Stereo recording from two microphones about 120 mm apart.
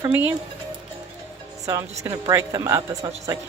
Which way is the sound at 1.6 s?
25° right (ahead or behind).